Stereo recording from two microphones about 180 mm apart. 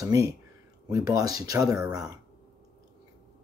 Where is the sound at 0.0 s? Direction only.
20° right (ahead or behind).